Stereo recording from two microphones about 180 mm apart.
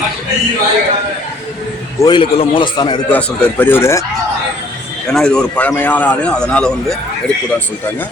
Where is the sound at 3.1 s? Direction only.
10° left (ahead or behind).